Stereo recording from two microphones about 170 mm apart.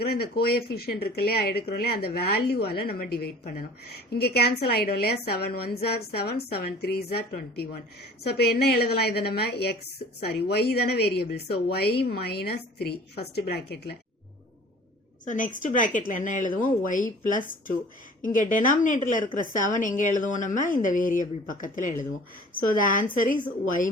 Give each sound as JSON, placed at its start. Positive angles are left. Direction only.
{"t": 0.0, "sound": "a woman's voice", "side_deg": 65}
{"t": 15.2, "sound": "a woman's voice", "side_deg": 50}